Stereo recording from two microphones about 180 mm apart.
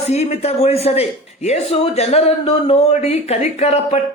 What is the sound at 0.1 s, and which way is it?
Speech, 35° left (ahead or behind).